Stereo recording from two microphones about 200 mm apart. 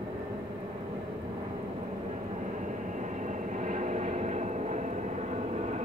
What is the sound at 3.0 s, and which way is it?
Vehicle, 40° right (ahead or behind).